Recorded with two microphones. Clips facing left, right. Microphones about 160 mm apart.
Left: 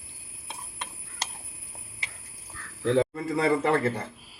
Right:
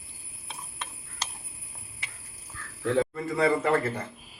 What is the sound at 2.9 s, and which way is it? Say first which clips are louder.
A man's voice: left 2 dB; 25° left (ahead or behind).